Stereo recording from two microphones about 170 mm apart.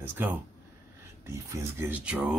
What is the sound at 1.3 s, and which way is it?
Speech, 15° right (ahead or behind).